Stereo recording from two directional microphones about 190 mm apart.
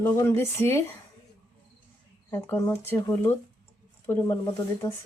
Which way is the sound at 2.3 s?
10° left (ahead or behind).